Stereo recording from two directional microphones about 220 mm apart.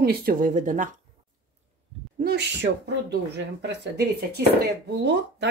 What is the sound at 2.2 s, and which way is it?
Speech, 50° right (ahead or behind).